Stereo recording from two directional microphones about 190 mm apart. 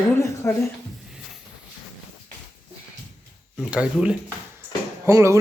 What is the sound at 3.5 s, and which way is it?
A man's voice, 5° right (ahead or behind).